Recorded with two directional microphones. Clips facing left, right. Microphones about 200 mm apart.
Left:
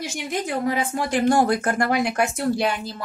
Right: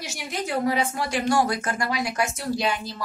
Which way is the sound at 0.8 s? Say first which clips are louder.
Left 3 dB; 50° left (ahead or behind).